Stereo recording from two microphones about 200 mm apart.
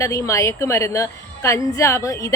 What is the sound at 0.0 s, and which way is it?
A woman's voice, 15° left (ahead or behind).